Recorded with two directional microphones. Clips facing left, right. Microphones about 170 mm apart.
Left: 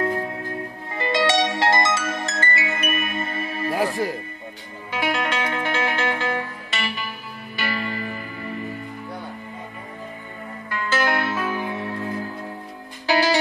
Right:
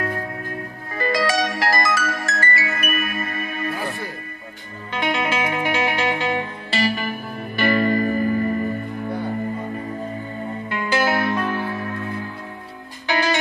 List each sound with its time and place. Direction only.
0.0 s music: 20° left (ahead or behind)
3.7 s music: 90° left
4.9 s music: centre (ahead or behind); by 6.4 s 15° right (ahead or behind)
6.7 s music: 40° right (ahead or behind)
10.4 s music: 20° right (ahead or behind); by 13.4 s 35° left (ahead or behind)